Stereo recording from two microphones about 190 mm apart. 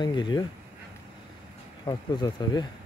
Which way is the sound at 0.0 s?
25° left (ahead or behind).